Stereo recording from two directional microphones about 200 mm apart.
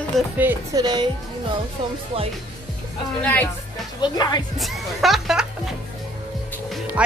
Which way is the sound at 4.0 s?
20° left (ahead or behind).